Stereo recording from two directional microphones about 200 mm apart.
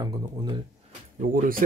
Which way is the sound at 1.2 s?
45° right (ahead or behind).